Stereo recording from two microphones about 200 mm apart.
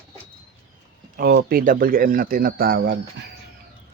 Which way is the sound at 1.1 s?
50° right (ahead or behind).